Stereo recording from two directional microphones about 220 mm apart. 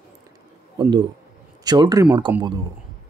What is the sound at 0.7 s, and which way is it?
Speech, 20° right (ahead or behind).